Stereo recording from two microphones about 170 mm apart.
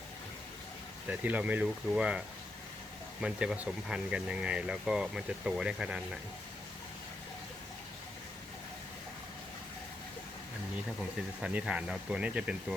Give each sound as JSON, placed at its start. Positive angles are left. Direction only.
{"t": 1.0, "sound": "speech", "side_deg": -10}
{"t": 11.4, "sound": "speech", "side_deg": -5}